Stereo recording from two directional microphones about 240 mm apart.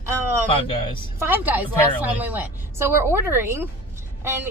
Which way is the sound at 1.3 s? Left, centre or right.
Centre.